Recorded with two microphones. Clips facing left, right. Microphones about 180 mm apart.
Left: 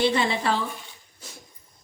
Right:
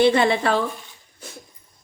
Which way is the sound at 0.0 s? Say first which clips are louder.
Right 6 dB; 60° right (ahead or behind).